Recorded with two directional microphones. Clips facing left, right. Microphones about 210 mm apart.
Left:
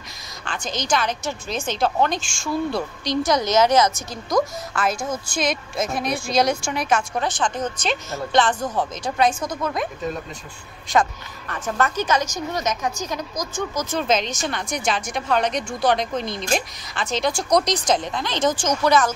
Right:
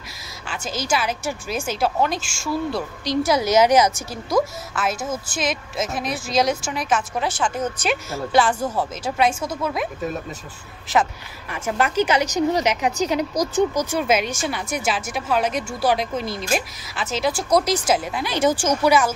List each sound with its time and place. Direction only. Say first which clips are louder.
0.5 s a woman's voice: even; 5° right (ahead or behind)
10.9 s speech: even; 10° right (ahead or behind)
13.3 s speech: right 8 dB; 40° right (ahead or behind)
13.7 s a woman's voice: right 2 dB; 10° right (ahead or behind)